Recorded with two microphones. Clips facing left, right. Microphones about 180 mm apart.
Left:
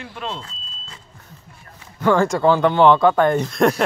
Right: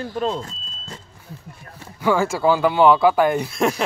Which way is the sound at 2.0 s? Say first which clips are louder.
Left 2 dB; 5° right (ahead or behind).